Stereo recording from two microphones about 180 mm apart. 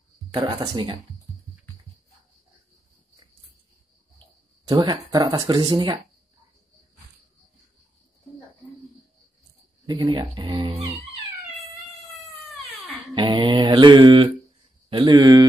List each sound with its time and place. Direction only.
0.3 s speech: 25° right (ahead or behind)
4.6 s speech: 20° right (ahead or behind)
9.8 s speech: 25° right (ahead or behind)
13.1 s speech: 25° right (ahead or behind)